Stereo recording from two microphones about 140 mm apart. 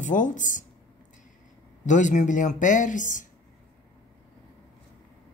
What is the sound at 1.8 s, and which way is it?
Speech, 60° left (ahead or behind).